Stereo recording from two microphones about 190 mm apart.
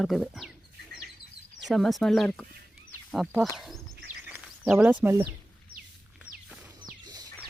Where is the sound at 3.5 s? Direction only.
Centre (ahead or behind).